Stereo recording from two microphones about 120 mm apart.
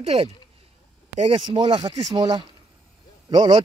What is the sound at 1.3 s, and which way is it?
Speech, 45° right (ahead or behind).